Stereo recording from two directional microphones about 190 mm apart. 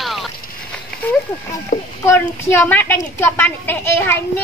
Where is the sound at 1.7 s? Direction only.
40° left (ahead or behind).